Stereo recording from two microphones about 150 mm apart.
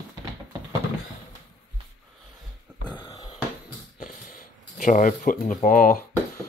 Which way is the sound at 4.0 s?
60° left (ahead or behind).